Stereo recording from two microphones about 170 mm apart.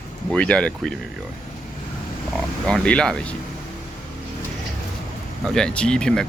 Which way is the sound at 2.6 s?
5° left (ahead or behind).